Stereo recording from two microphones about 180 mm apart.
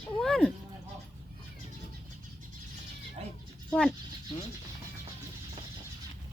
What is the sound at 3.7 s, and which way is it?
Speech, 10° left (ahead or behind).